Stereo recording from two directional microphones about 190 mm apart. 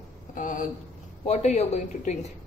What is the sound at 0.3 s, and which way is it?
A woman's voice, 45° left (ahead or behind).